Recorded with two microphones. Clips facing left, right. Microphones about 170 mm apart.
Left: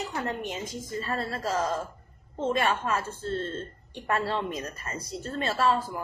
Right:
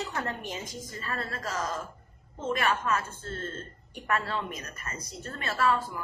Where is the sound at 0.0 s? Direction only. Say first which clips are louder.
Left 2 dB; 20° left (ahead or behind).